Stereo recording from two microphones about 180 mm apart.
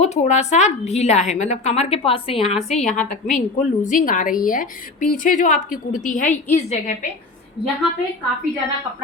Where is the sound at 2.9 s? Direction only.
45° left (ahead or behind).